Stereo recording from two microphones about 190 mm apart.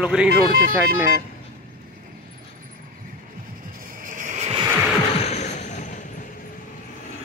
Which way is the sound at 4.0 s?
45° right (ahead or behind).